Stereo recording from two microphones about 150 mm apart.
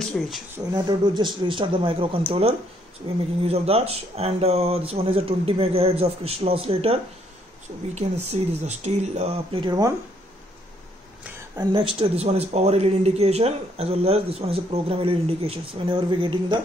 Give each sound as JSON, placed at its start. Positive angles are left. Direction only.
{"t": 0.0, "sound": "speech", "side_deg": 5}
{"t": 0.7, "sound": "speech", "side_deg": -30}
{"t": 11.7, "sound": "speech", "side_deg": -40}